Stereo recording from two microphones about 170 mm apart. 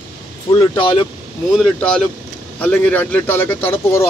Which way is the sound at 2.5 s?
10° left (ahead or behind).